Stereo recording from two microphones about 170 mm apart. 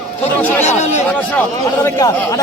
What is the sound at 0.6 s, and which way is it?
Speech, 40° left (ahead or behind).